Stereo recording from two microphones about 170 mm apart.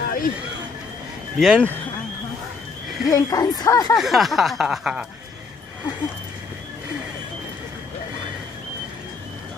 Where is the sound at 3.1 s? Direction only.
20° left (ahead or behind).